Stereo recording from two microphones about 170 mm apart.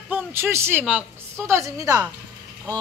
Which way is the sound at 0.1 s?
15° right (ahead or behind).